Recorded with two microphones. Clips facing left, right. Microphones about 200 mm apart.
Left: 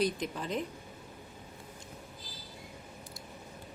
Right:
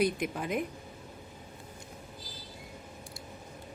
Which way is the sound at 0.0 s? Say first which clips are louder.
Right 2 dB; 10° right (ahead or behind).